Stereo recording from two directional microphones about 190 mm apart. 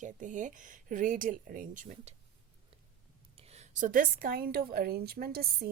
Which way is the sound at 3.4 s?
35° right (ahead or behind).